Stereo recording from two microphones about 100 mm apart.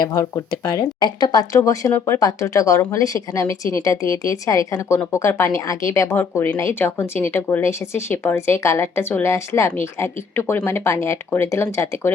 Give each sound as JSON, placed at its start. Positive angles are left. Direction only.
{"t": 0.0, "sound": "speech", "side_deg": 35}